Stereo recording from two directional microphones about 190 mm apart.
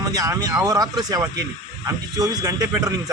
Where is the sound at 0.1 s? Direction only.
20° right (ahead or behind).